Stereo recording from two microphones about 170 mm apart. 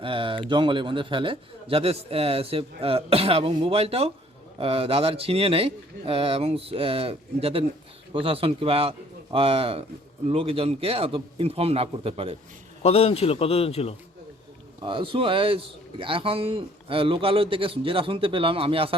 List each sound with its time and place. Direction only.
0.0 s a man's voice: 30° right (ahead or behind)
12.8 s a man's voice: 35° left (ahead or behind)
14.8 s a man's voice: 30° right (ahead or behind)